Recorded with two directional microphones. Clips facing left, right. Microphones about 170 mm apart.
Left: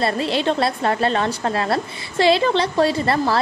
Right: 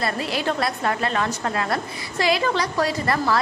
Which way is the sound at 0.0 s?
25° left (ahead or behind).